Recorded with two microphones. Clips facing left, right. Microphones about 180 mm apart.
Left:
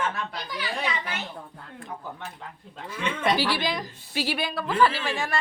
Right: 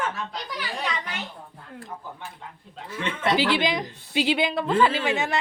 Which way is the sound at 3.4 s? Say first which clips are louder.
Right 3 dB; 20° right (ahead or behind).